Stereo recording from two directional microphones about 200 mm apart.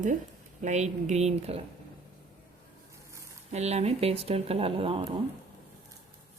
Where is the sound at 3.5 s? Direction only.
35° right (ahead or behind).